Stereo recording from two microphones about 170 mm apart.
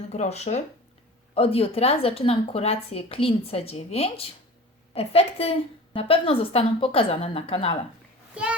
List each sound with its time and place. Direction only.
0.1 s speech: 40° left (ahead or behind)